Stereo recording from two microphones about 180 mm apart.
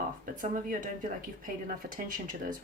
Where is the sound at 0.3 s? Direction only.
45° right (ahead or behind).